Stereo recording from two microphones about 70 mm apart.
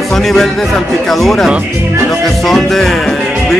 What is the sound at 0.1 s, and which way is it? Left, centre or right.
Speech, centre.